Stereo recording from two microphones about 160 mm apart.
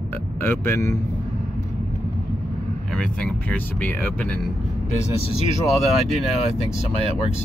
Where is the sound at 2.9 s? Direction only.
5° left (ahead or behind).